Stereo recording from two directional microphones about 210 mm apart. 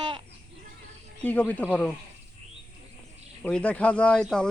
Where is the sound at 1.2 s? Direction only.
5° left (ahead or behind).